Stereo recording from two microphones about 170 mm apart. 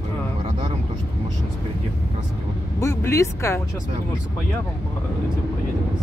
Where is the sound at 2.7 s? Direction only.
15° left (ahead or behind).